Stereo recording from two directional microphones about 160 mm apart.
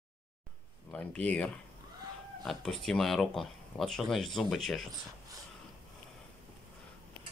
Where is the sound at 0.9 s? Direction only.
5° left (ahead or behind).